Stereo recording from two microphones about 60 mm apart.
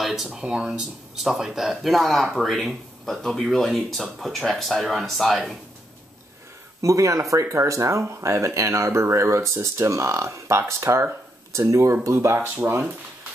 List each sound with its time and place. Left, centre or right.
0.0 s speech: centre
6.8 s speech: right
12.4 s speech: right